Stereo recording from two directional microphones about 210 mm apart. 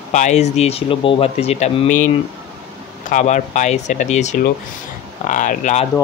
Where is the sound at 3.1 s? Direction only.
35° left (ahead or behind).